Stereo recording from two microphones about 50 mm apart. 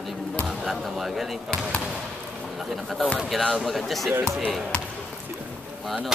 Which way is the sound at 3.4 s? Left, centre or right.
Centre.